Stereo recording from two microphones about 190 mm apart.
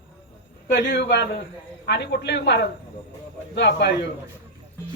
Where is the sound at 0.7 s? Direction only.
70° left (ahead or behind).